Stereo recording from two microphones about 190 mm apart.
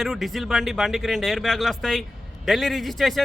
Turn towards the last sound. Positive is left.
turn(degrees=0)  # may be behind; listen again after turning